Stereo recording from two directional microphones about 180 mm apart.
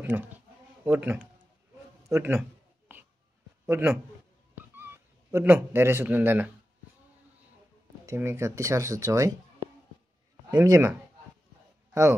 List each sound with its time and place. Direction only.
0.0 s a man's voice: 10° right (ahead or behind)
3.6 s speech: 15° right (ahead or behind)
4.6 s a sound: 10° right (ahead or behind)
8.0 s speech: 15° right (ahead or behind)
10.5 s speech: 20° right (ahead or behind)